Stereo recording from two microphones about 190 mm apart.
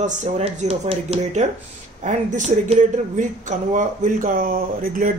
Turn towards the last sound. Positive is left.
turn(degrees=-45)  # may be behind; listen again after turning